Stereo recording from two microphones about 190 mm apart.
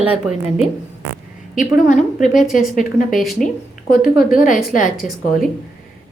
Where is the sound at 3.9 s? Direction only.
50° left (ahead or behind).